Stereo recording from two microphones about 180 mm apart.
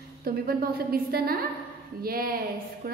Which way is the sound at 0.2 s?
55° right (ahead or behind).